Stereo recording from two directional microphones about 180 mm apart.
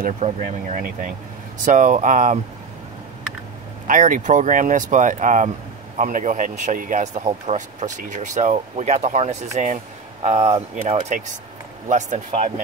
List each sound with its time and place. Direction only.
0.0 s speech: 40° right (ahead or behind)
3.8 s speech: 45° right (ahead or behind)